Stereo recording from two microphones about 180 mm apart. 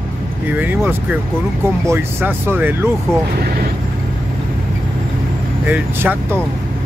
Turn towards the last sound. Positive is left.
turn(degrees=-10)  # may be behind; listen again after turning